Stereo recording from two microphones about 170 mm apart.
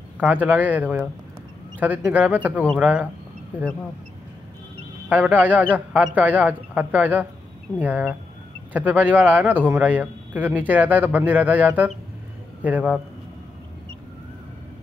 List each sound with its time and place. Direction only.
0.2 s a man's voice: 10° right (ahead or behind)
5.1 s a man's voice: 10° right (ahead or behind)